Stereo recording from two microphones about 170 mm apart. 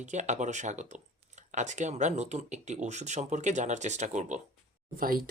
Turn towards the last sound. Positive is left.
turn(degrees=-55)  # may be behind; listen again after turning